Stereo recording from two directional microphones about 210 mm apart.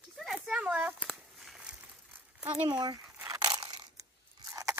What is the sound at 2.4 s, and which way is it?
Speech, 20° right (ahead or behind).